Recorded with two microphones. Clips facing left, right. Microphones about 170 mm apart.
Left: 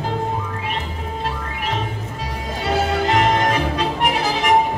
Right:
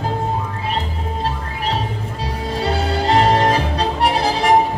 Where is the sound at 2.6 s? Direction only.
35° right (ahead or behind).